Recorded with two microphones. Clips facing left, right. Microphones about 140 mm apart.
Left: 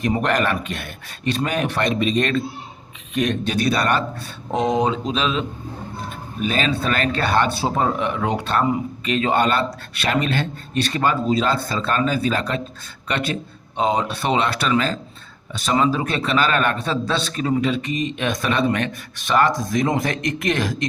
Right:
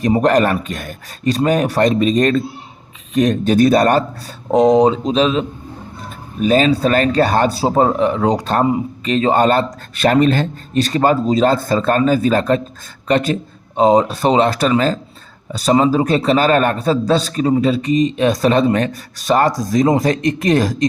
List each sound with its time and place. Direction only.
0.0 s a man's voice: 35° right (ahead or behind)